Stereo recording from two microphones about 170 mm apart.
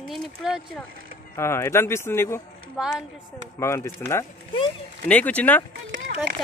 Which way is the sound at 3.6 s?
15° left (ahead or behind).